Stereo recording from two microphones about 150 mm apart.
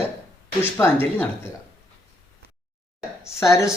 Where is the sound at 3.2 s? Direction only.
20° left (ahead or behind).